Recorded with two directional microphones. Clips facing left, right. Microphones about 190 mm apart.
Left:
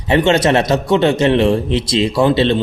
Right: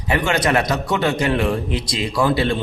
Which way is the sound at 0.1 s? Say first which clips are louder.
Left 6 dB; 25° left (ahead or behind).